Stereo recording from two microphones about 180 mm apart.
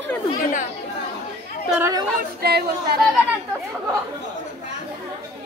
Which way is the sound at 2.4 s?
60° right (ahead or behind).